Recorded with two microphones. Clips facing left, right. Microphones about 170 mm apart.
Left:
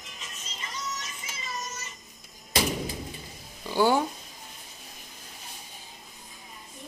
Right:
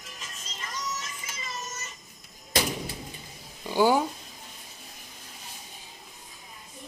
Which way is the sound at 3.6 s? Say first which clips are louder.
Right 1 dB; 15° right (ahead or behind).